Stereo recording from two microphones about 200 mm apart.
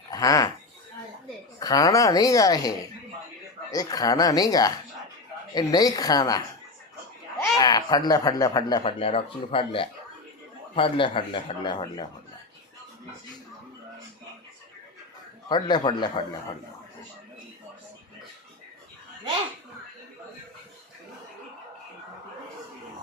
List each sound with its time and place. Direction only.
0.1 s speech: 15° left (ahead or behind)
1.5 s a woman's voice: 20° left (ahead or behind)
8.8 s speech: 30° left (ahead or behind)
15.4 s speech: 20° left (ahead or behind)